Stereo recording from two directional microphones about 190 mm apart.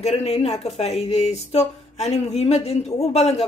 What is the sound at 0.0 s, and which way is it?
Speech, 35° left (ahead or behind).